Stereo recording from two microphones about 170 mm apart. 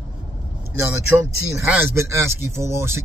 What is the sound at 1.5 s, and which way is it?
Speech, 15° right (ahead or behind).